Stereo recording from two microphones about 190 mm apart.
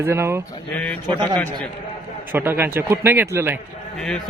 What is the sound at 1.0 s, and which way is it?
Speech, 25° right (ahead or behind).